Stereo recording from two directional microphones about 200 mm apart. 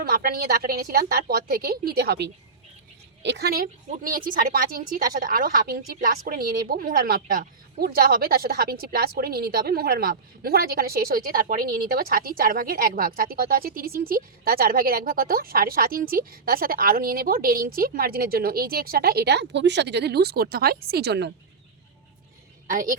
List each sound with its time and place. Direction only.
0.0 s a woman's voice: 45° right (ahead or behind)
22.6 s a woman's voice: 40° right (ahead or behind)